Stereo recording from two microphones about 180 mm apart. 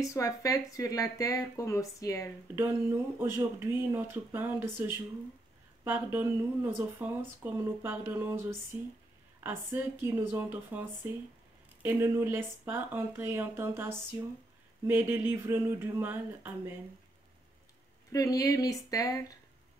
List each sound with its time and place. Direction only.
0.0 s speech: 15° left (ahead or behind)
2.5 s speech: 10° right (ahead or behind)
6.1 s speech: 10° right (ahead or behind)
18.1 s speech: 20° left (ahead or behind)